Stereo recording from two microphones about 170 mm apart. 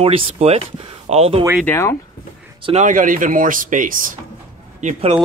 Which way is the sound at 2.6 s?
40° right (ahead or behind).